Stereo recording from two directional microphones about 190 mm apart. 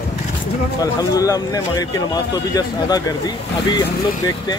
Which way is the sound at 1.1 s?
20° left (ahead or behind).